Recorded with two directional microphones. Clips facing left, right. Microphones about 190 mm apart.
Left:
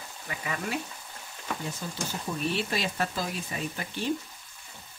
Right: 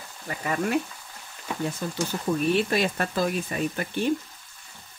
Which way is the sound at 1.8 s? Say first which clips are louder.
Right 7 dB; 60° right (ahead or behind).